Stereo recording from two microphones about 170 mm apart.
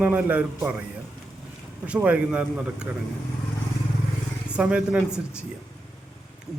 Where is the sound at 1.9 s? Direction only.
10° right (ahead or behind).